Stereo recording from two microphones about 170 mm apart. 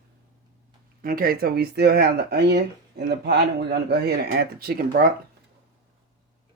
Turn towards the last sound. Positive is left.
turn(degrees=-60)  # may be behind; listen again after turning